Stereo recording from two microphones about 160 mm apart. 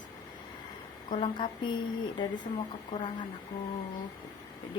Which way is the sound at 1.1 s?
30° left (ahead or behind).